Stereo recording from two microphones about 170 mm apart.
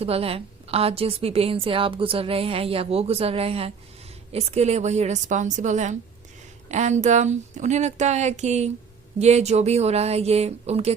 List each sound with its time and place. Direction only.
0.0 s a woman's voice: 35° right (ahead or behind)